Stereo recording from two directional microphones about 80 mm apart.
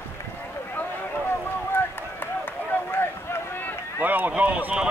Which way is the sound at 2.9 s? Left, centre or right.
Left.